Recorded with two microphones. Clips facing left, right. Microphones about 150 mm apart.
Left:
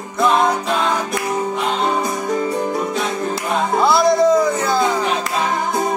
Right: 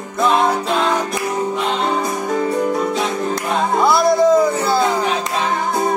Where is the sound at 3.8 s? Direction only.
Centre (ahead or behind).